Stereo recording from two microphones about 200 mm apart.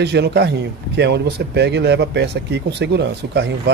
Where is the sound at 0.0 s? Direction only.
55° right (ahead or behind).